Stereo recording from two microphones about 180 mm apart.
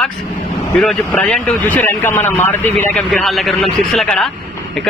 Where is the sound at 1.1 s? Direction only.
5° left (ahead or behind).